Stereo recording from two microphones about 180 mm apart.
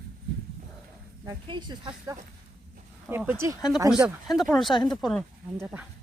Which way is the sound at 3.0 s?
10° right (ahead or behind).